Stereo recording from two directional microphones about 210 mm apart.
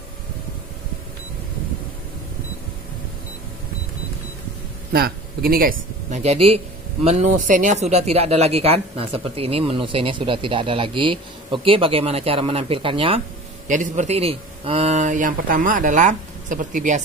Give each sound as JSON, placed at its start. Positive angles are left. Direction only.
{"t": 4.9, "sound": "speech", "side_deg": -45}
{"t": 13.7, "sound": "speech", "side_deg": -35}